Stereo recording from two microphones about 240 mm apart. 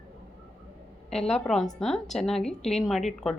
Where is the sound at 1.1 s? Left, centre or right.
Centre.